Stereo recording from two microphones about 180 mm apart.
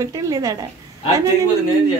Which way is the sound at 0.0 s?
20° right (ahead or behind).